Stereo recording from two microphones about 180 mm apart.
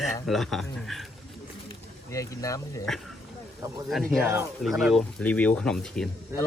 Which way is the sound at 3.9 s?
Centre (ahead or behind).